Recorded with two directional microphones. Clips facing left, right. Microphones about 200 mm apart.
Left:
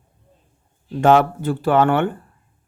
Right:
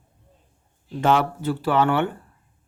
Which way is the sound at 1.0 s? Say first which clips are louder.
Left 5 dB; 50° left (ahead or behind).